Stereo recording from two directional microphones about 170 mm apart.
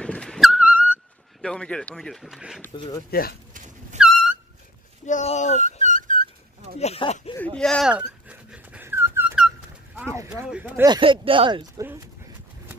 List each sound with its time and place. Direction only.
0.0 s a sound: 5° left (ahead or behind)
1.4 s speech: 5° left (ahead or behind)
2.7 s speech: 30° left (ahead or behind)
3.1 s speech: 60° left (ahead or behind)
3.5 s a sound: 45° right (ahead or behind)
4.0 s a sound: centre (ahead or behind)
5.0 s speech: 45° left (ahead or behind)
5.8 s a sound: 50° right (ahead or behind)
6.8 s speech: 40° left (ahead or behind)
7.3 s dog: 5° left (ahead or behind); by 9.4 s 15° right (ahead or behind)
10.3 s speech: 5° right (ahead or behind)
11.0 s speech: 30° right (ahead or behind)